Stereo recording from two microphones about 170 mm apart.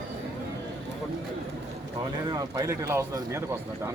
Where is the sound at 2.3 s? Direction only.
20° right (ahead or behind).